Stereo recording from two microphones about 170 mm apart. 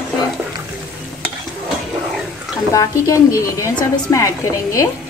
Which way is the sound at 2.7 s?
20° left (ahead or behind).